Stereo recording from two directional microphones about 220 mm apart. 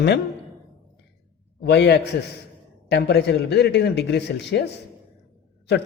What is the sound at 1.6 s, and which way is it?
A man's voice, 50° left (ahead or behind).